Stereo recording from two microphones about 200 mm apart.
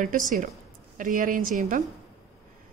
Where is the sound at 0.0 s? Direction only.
40° right (ahead or behind).